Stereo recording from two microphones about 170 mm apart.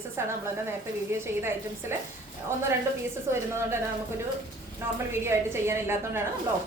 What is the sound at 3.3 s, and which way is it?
Speech, 15° right (ahead or behind).